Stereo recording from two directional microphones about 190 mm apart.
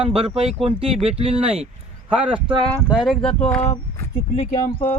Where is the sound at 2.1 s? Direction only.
5° right (ahead or behind).